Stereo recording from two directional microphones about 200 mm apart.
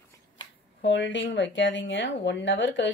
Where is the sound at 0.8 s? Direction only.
65° left (ahead or behind).